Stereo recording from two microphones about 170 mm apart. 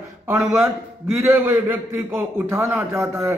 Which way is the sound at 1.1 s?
15° right (ahead or behind).